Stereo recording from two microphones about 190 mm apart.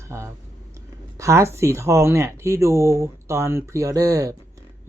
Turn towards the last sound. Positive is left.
turn(degrees=-20)  # may be behind; listen again after turning